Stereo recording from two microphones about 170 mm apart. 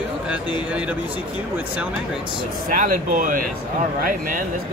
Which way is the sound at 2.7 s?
55° right (ahead or behind).